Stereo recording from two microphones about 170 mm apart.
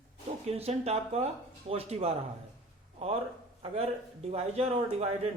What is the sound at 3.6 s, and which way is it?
A man's voice, 35° right (ahead or behind).